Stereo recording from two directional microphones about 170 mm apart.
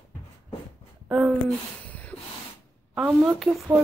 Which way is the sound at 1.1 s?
5° right (ahead or behind).